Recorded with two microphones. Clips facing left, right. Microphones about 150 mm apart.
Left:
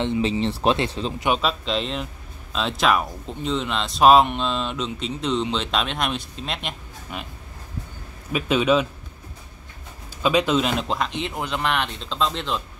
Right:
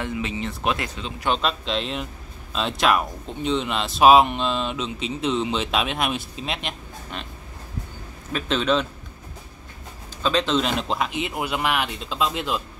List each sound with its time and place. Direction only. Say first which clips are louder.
0.0 s speech: left 6 dB; 30° left (ahead or behind)
1.4 s speech: left 1 dB; centre (ahead or behind)
8.3 s a man's voice: left 3 dB; 10° left (ahead or behind)
10.2 s speech: left 2 dB; 10° left (ahead or behind); by 12.6 s 5° right (ahead or behind)